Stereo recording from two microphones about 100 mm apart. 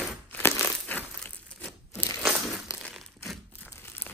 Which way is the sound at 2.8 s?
Centre (ahead or behind).